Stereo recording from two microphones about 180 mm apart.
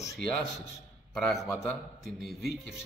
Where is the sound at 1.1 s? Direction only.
5° left (ahead or behind).